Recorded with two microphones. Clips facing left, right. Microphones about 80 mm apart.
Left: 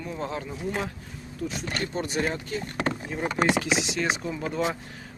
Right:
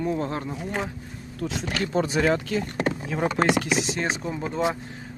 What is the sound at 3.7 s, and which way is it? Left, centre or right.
Speech, right.